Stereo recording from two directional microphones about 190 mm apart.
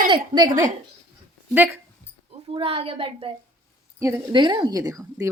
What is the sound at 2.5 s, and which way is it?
Speech, 30° right (ahead or behind).